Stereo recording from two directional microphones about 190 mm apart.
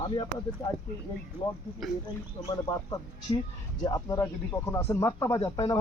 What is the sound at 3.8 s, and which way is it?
Speech, 20° left (ahead or behind).